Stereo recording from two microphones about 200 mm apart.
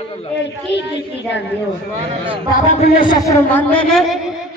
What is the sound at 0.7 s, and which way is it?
Speech, 65° left (ahead or behind).